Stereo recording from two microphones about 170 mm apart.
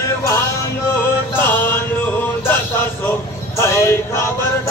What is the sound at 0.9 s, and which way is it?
Mantra, 15° left (ahead or behind).